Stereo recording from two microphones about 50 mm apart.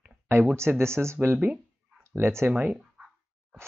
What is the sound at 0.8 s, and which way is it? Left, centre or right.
Speech, right.